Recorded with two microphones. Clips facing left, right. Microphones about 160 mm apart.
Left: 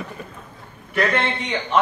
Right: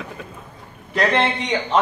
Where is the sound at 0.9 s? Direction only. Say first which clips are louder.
Right 2 dB; 35° right (ahead or behind).